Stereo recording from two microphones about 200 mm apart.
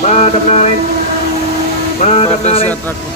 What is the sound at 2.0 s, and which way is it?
Music, 35° left (ahead or behind).